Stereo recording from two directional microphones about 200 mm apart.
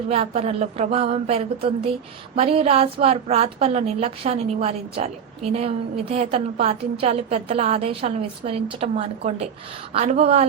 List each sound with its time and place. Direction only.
0.1 s a woman's voice: 30° right (ahead or behind)